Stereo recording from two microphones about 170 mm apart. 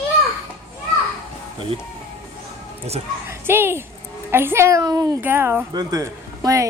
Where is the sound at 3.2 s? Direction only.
15° right (ahead or behind).